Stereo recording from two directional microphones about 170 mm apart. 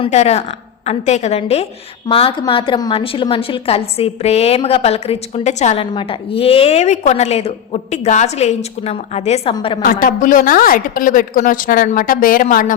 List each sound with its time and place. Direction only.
0.0 s a woman's voice: 40° left (ahead or behind)
9.8 s a woman's voice: 60° left (ahead or behind)